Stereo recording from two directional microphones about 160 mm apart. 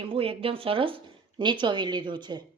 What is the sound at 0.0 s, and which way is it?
Speech, 35° right (ahead or behind).